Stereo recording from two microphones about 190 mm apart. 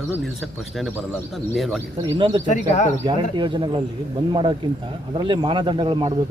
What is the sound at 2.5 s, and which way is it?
Speech, 40° left (ahead or behind).